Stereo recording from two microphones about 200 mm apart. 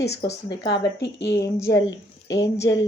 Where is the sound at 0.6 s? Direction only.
60° left (ahead or behind).